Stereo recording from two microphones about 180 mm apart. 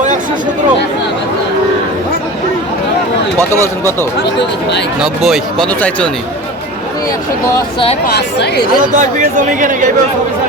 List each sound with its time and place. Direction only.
4.9 s speech: centre (ahead or behind)
8.0 s speech: 65° left (ahead or behind)
8.8 s speech: 45° right (ahead or behind)